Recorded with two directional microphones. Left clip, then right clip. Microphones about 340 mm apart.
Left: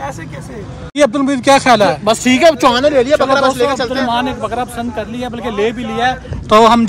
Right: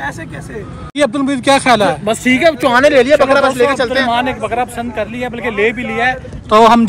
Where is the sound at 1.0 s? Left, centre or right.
Centre.